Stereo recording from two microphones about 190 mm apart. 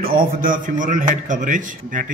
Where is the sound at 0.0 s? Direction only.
50° right (ahead or behind).